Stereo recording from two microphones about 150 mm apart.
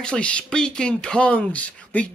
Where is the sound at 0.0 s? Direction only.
5° left (ahead or behind).